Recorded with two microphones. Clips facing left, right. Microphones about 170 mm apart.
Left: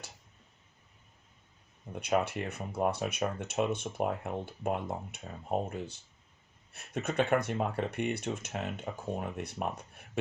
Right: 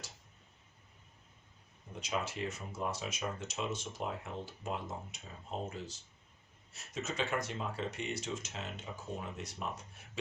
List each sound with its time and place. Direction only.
2.0 s speech: 60° left (ahead or behind)